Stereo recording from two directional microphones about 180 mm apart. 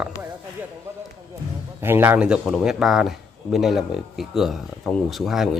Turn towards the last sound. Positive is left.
turn(degrees=0)  # may be behind; listen again after turning